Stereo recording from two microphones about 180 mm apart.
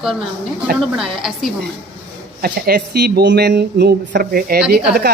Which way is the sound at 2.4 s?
60° right (ahead or behind).